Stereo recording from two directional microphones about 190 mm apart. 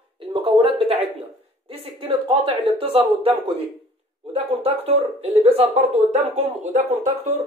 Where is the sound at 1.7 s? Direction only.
30° right (ahead or behind).